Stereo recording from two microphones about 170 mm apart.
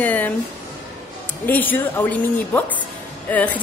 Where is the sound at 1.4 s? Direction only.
10° left (ahead or behind).